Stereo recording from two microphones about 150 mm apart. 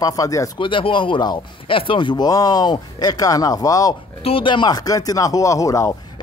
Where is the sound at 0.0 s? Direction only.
25° left (ahead or behind).